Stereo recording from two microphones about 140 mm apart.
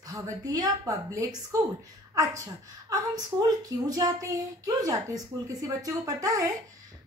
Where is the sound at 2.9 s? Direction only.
25° right (ahead or behind).